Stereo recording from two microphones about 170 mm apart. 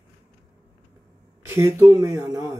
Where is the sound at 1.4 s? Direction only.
15° right (ahead or behind).